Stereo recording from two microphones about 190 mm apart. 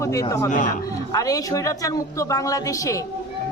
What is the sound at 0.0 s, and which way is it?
A man's voice, 15° left (ahead or behind).